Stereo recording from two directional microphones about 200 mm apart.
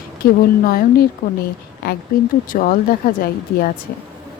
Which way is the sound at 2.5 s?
45° left (ahead or behind).